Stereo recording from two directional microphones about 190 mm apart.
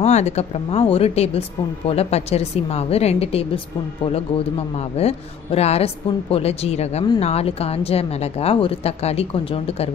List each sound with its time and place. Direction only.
0.0 s speech: 35° left (ahead or behind)
4.7 s speech: 30° left (ahead or behind)